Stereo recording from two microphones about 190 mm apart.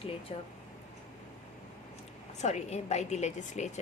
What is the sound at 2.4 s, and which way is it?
Speech, 35° left (ahead or behind).